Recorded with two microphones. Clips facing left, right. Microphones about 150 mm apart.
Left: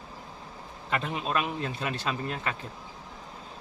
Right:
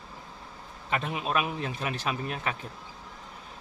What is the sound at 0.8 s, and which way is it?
A man's voice, 5° right (ahead or behind).